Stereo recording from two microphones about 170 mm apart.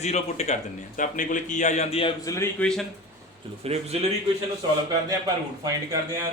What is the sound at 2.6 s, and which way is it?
Speech, 5° left (ahead or behind).